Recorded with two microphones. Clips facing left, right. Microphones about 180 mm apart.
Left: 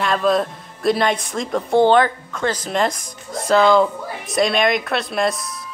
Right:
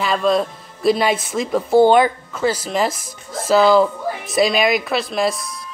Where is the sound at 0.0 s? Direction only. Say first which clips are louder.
Even; centre (ahead or behind).